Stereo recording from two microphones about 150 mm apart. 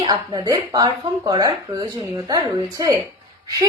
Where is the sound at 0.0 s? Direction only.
25° right (ahead or behind).